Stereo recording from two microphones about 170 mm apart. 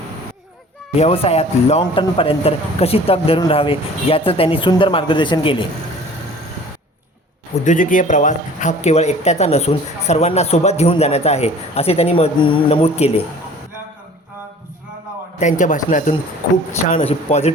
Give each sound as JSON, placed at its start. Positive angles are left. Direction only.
{"t": 0.9, "sound": "a man's voice", "side_deg": 35}
{"t": 7.6, "sound": "a man's voice", "side_deg": 50}
{"t": 15.4, "sound": "a man's voice", "side_deg": 45}
{"t": 16.9, "sound": "a man's voice", "side_deg": 40}